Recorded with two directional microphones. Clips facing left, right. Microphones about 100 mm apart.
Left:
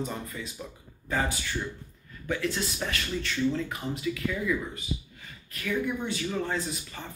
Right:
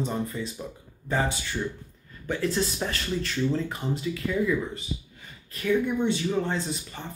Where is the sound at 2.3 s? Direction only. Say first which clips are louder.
Right 3 dB; 35° right (ahead or behind).